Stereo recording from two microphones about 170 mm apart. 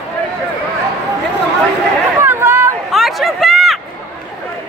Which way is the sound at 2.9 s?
Centre (ahead or behind).